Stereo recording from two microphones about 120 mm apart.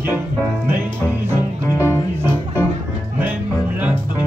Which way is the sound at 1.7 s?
20° left (ahead or behind).